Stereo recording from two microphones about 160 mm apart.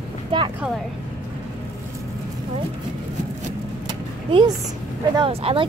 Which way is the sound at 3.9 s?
25° right (ahead or behind).